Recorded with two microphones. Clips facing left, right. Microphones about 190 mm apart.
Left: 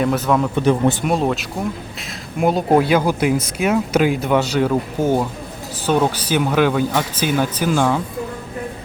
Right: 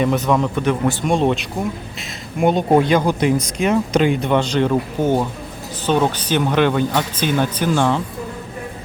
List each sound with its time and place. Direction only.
0.3 s speech: centre (ahead or behind)
0.5 s speech: 35° left (ahead or behind)
1.0 s speech: 5° left (ahead or behind)